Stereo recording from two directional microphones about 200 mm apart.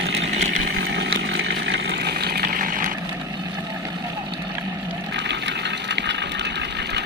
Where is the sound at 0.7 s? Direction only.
60° right (ahead or behind).